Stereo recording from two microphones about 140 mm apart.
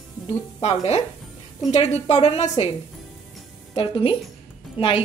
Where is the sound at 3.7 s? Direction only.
40° left (ahead or behind).